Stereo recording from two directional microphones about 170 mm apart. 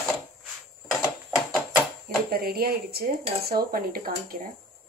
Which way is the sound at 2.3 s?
65° right (ahead or behind).